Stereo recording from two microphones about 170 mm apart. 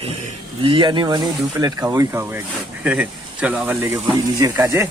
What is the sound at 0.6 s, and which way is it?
Speech, 30° right (ahead or behind).